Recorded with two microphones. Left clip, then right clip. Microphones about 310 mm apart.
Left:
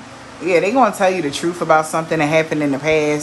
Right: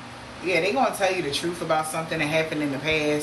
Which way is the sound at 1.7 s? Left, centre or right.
Centre.